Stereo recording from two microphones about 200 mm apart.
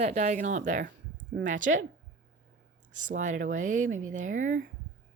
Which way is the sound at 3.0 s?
40° right (ahead or behind).